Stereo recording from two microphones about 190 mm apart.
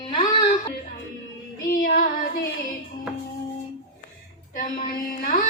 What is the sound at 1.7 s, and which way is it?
Child singing, 50° left (ahead or behind).